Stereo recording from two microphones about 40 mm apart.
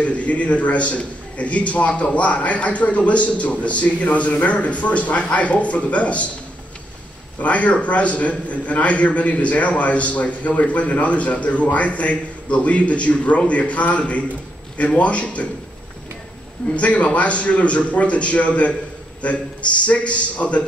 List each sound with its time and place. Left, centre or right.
0.0 s a man's voice: left
7.3 s a man's voice: left
16.6 s a man's voice: left